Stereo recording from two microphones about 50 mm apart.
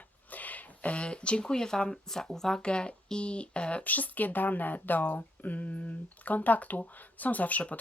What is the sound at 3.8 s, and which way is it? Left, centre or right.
Speech, left.